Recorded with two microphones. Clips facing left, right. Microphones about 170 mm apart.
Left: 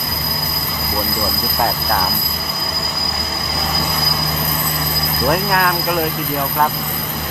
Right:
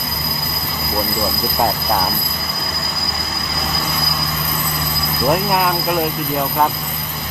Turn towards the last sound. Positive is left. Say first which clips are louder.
# even
turn(degrees=-5)  # may be behind; listen again after turning